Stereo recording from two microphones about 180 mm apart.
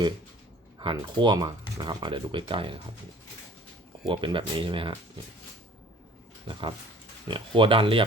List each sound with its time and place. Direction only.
0.8 s speech: 25° right (ahead or behind)
4.0 s speech: 25° right (ahead or behind)
6.5 s speech: 25° right (ahead or behind)